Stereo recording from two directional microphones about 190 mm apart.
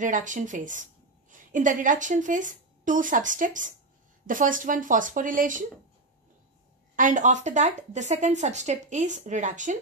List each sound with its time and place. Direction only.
0.0 s speech: 40° right (ahead or behind)
7.0 s speech: 40° right (ahead or behind)